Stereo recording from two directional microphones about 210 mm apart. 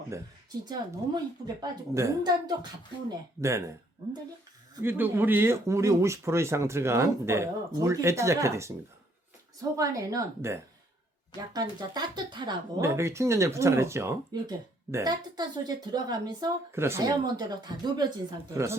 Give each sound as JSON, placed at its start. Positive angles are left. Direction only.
{"t": 0.6, "sound": "speech", "side_deg": -20}